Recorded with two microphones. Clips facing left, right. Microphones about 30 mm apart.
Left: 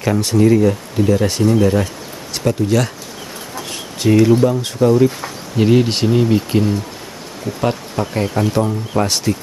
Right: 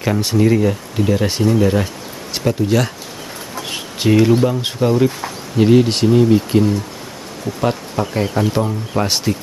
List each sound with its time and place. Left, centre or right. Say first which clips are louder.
0.0 s speech: left 1 dB; centre
1.5 s speech: even; centre
3.6 s a sound: even; right
4.1 s speech: left 1 dB; centre
4.9 s speech: left 2 dB; centre
9.0 s speech: right 1 dB; centre